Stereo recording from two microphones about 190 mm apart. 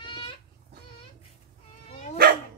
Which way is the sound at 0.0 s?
25° left (ahead or behind).